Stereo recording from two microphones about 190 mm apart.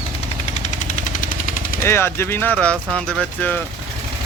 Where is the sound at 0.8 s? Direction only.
45° left (ahead or behind).